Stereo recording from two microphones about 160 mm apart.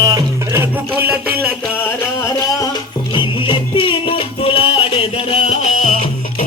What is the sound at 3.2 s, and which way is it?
Music, 30° left (ahead or behind).